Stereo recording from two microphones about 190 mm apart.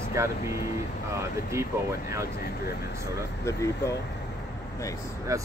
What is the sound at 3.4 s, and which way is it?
Speech, 15° left (ahead or behind).